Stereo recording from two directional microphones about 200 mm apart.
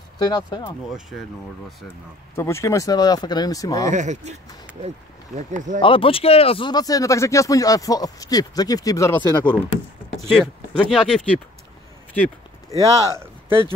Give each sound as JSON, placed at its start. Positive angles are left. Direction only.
{"t": 0.2, "sound": "speech", "side_deg": 20}
{"t": 0.8, "sound": "speech", "side_deg": 0}
{"t": 2.3, "sound": "speech", "side_deg": 15}
{"t": 3.9, "sound": "speech", "side_deg": -35}
{"t": 5.8, "sound": "speech", "side_deg": 25}
{"t": 10.1, "sound": "speech", "side_deg": 0}
{"t": 12.8, "sound": "speech", "side_deg": -15}